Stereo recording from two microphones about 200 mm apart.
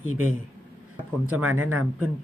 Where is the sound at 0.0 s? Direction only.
90° right.